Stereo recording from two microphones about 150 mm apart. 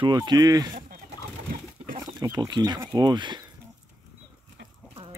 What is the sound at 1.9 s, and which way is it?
Speech, 25° right (ahead or behind).